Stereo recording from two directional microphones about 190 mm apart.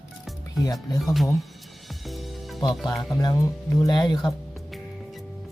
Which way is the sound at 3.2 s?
20° left (ahead or behind).